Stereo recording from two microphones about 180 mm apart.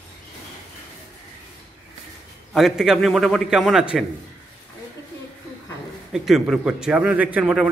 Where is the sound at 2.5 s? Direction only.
Centre (ahead or behind).